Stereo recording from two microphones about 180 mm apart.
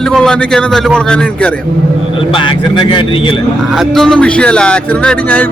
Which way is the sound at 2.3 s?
25° left (ahead or behind).